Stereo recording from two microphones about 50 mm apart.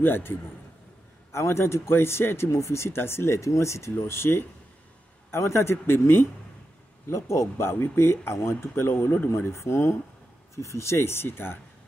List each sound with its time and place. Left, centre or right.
0.0 s a man's voice: left
1.3 s speech: left
2.5 s speech: left
4.0 s speech: left
7.1 s speech: left
9.5 s speech: left
10.5 s speech: left